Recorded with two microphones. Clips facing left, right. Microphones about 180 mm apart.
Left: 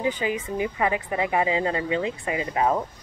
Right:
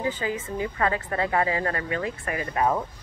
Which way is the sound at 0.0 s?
20° left (ahead or behind).